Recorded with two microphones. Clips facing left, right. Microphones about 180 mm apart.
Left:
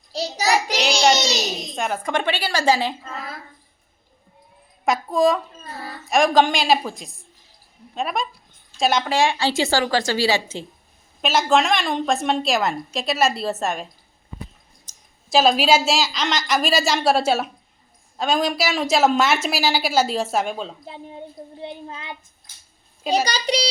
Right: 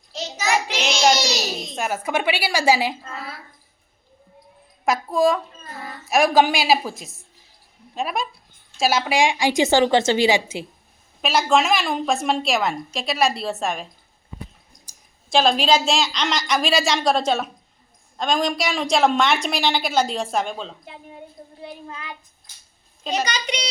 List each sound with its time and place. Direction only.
0.1 s child singing: 35° left (ahead or behind)
1.2 s a woman's voice: centre (ahead or behind)
4.9 s a woman's voice: centre (ahead or behind)
11.2 s a woman's voice: centre (ahead or behind)
15.3 s a woman's voice: 5° left (ahead or behind)
20.8 s a child's voice: 30° left (ahead or behind)
23.1 s a child's voice: 35° left (ahead or behind)